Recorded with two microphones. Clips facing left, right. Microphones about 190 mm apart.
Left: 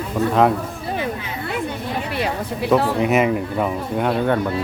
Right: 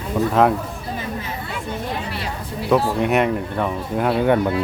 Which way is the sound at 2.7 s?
Centre (ahead or behind).